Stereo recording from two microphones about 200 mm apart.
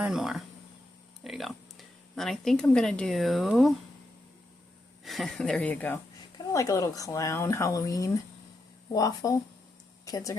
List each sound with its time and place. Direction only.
0.0 s speech: centre (ahead or behind)
5.0 s speech: centre (ahead or behind); by 10.3 s 15° left (ahead or behind)